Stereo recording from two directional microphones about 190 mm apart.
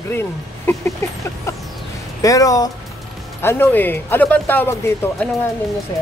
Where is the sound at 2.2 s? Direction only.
20° left (ahead or behind).